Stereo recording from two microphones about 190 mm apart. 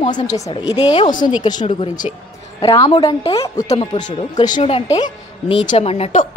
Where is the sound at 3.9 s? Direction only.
25° left (ahead or behind).